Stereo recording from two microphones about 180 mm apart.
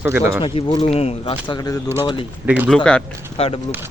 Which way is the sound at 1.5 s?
20° left (ahead or behind).